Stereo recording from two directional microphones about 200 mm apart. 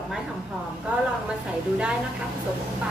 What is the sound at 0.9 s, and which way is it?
A woman's voice, 5° right (ahead or behind).